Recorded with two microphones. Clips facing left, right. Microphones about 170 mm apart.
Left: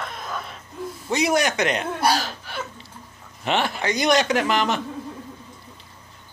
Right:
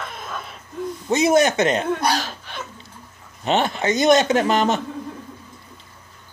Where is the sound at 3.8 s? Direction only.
25° right (ahead or behind).